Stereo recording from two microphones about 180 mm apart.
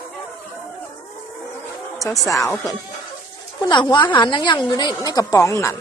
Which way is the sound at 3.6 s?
25° left (ahead or behind).